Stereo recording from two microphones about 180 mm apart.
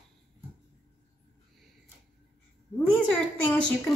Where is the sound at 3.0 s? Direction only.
10° left (ahead or behind).